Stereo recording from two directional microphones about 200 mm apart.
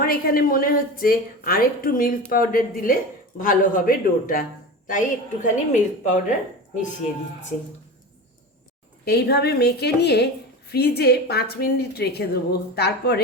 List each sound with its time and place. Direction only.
0.0 s a woman's voice: 45° left (ahead or behind)
9.0 s a woman's voice: 55° left (ahead or behind)